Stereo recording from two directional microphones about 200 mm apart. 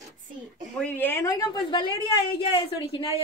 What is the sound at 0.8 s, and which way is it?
A woman's voice, 10° left (ahead or behind).